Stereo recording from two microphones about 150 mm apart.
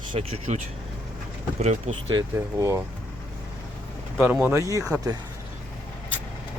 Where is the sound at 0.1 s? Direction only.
40° right (ahead or behind).